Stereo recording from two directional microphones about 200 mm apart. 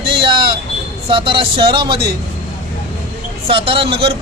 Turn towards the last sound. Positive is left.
turn(degrees=-25)  # may be behind; listen again after turning